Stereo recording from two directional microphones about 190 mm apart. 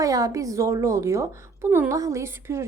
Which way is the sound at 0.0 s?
20° right (ahead or behind).